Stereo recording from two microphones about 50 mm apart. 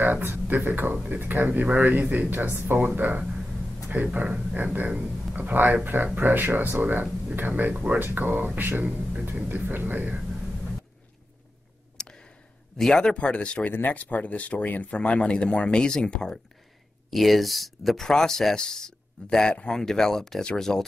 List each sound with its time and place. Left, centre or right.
0.0 s speech: right
3.9 s speech: right
12.0 s a sound: centre
12.9 s speech: centre
13.7 s speech: left; by 16.3 s centre
17.1 s speech: centre